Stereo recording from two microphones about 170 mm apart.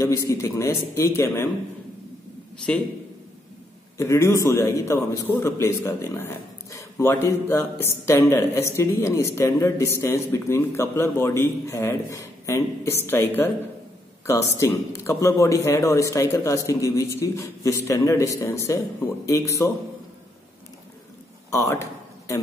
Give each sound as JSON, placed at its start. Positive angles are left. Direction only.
{"t": 0.0, "sound": "a man's voice", "side_deg": 20}
{"t": 4.0, "sound": "a man's voice", "side_deg": 15}
{"t": 14.6, "sound": "a man's voice", "side_deg": 15}
{"t": 21.5, "sound": "speech", "side_deg": 20}